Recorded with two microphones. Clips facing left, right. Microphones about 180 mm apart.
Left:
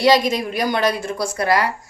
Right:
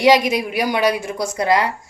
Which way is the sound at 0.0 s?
15° right (ahead or behind).